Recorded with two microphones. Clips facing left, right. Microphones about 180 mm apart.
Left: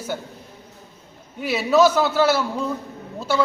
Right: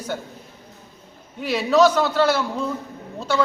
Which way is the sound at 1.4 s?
5° left (ahead or behind).